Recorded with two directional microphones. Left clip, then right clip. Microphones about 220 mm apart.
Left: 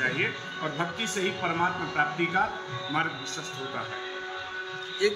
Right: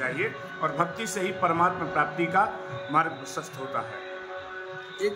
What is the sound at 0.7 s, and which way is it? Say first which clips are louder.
Speech: right 2 dB; 20° right (ahead or behind).